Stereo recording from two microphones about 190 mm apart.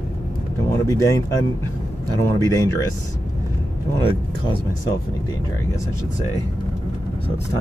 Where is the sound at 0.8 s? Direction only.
15° left (ahead or behind).